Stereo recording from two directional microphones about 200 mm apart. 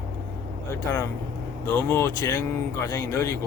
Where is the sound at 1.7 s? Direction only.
10° left (ahead or behind).